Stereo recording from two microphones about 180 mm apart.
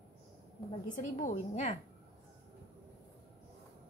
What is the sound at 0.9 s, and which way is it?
Speech, 45° left (ahead or behind).